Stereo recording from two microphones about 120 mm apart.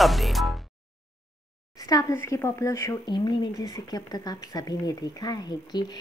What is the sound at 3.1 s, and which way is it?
A woman's voice, 35° left (ahead or behind).